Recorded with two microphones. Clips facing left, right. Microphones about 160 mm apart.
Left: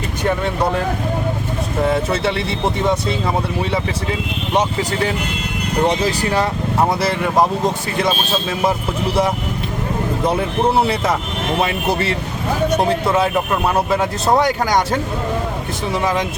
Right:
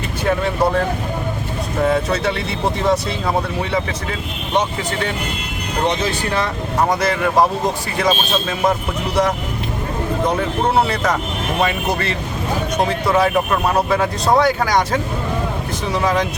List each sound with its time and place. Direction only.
5.9 s speech: 35° left (ahead or behind)
13.9 s speech: 5° left (ahead or behind)